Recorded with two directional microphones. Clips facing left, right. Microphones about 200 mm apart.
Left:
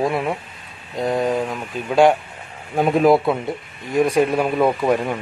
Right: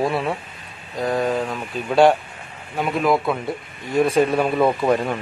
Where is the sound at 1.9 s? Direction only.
10° left (ahead or behind).